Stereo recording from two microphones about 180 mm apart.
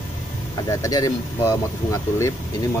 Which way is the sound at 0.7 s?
20° left (ahead or behind).